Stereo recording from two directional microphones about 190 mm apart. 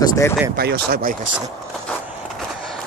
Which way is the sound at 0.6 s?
55° right (ahead or behind).